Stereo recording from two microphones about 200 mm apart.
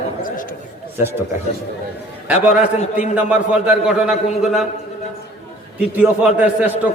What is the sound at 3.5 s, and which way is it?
A man's voice, 5° right (ahead or behind).